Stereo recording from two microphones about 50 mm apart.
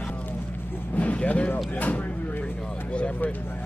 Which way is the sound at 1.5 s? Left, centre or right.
Left.